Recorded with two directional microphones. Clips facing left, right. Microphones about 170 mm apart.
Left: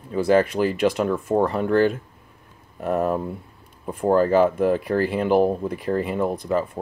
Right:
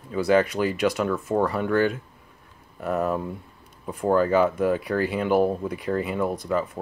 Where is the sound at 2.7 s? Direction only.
35° left (ahead or behind).